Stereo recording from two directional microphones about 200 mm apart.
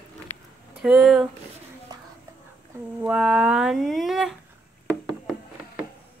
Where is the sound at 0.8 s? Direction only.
Centre (ahead or behind).